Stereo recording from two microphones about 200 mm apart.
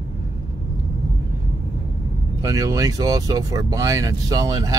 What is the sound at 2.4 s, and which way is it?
Speech, 15° right (ahead or behind).